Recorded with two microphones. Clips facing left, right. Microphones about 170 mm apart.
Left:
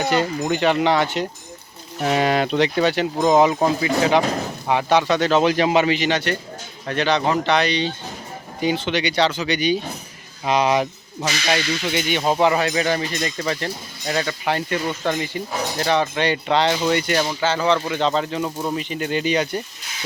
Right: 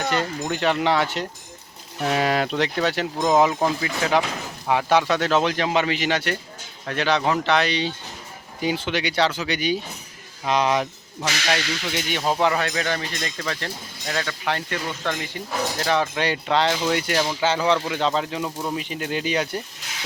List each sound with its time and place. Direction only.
0.0 s speech: 5° left (ahead or behind)
4.2 s speech: 40° left (ahead or behind)
4.7 s speech: centre (ahead or behind)
5.4 s speech: 10° left (ahead or behind); by 9.8 s 5° right (ahead or behind)
10.4 s speech: 5° left (ahead or behind)
17.4 s speech: 10° right (ahead or behind)